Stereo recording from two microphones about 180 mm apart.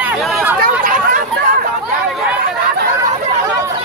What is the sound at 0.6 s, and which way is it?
Chatter, 50° right (ahead or behind).